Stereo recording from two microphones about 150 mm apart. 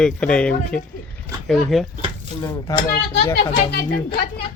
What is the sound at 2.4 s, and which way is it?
Speech, 25° left (ahead or behind).